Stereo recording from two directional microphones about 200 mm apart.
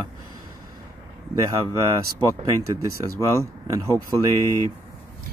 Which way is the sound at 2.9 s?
15° right (ahead or behind).